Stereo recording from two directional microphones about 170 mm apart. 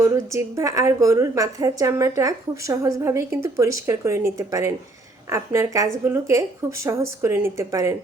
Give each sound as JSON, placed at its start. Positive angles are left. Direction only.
{"t": 0.0, "sound": "a woman's voice", "side_deg": -15}